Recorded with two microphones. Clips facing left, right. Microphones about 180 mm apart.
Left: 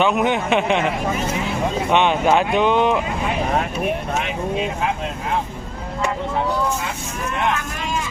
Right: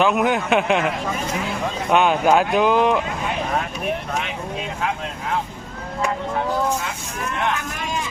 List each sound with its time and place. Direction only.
0.0 s speech: centre (ahead or behind)
1.9 s speech: centre (ahead or behind)